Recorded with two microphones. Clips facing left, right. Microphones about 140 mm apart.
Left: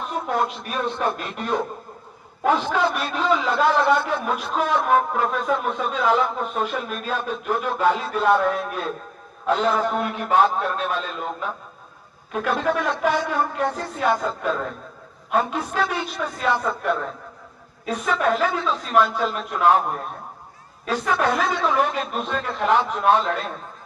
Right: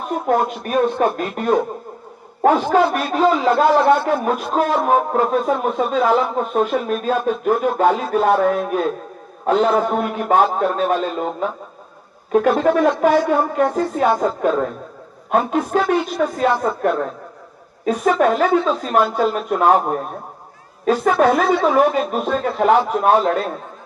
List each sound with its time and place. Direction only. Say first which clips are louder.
0.0 s a man's voice: right 5 dB; 45° right (ahead or behind)
21.2 s speech: right 7 dB; 45° right (ahead or behind)